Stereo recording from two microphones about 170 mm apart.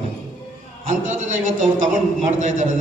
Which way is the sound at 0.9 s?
45° right (ahead or behind).